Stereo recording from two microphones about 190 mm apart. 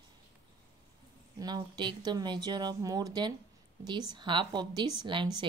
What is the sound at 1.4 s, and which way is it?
Speech, 25° right (ahead or behind).